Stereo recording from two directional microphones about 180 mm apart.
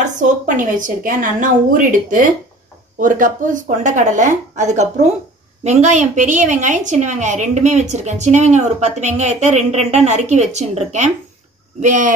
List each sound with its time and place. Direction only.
0.0 s a woman's voice: 45° right (ahead or behind)